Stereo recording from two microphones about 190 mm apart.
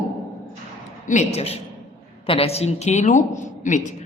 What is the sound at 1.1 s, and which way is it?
A woman's voice, 40° left (ahead or behind).